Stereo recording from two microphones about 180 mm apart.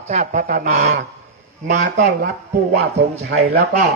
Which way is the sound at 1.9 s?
65° right (ahead or behind).